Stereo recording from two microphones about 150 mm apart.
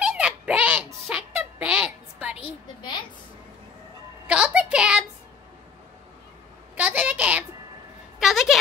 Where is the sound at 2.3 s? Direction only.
30° left (ahead or behind).